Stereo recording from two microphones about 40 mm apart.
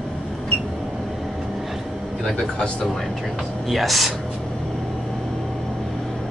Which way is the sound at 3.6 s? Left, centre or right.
Centre.